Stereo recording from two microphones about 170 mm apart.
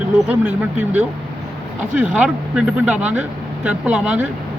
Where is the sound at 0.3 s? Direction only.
5° right (ahead or behind).